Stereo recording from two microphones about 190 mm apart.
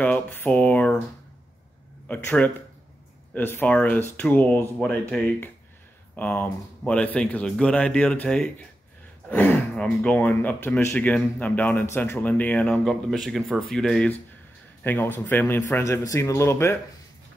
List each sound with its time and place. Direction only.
0.0 s speech: 10° left (ahead or behind)
2.0 s speech: 10° left (ahead or behind)